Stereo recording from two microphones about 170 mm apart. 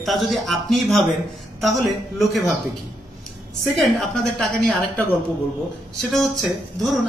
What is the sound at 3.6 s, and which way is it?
A man's voice, centre (ahead or behind).